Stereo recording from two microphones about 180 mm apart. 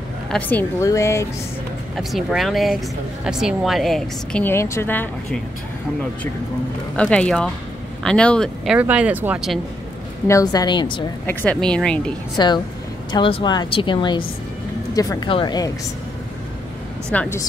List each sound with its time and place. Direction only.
0.3 s speech: 10° left (ahead or behind)
2.0 s a woman's voice: centre (ahead or behind)
7.0 s a woman's voice: 5° left (ahead or behind)
8.7 s speech: 10° right (ahead or behind)
10.2 s a woman's voice: 20° left (ahead or behind)
11.2 s a woman's voice: 5° left (ahead or behind)
12.4 s a woman's voice: 25° left (ahead or behind)
17.1 s speech: 10° left (ahead or behind)